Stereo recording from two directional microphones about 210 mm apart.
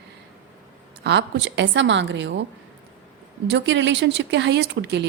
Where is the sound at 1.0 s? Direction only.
55° right (ahead or behind).